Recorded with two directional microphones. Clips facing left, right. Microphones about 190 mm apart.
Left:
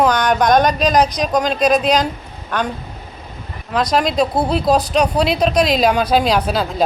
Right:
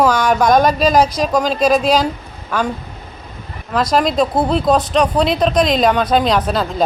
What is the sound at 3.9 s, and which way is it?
Speech, centre (ahead or behind).